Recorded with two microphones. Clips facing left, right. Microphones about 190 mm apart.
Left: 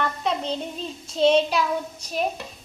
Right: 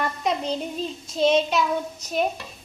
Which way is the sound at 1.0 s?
30° left (ahead or behind).